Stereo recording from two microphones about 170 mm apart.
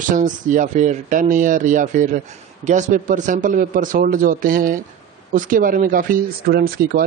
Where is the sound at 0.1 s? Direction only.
50° right (ahead or behind).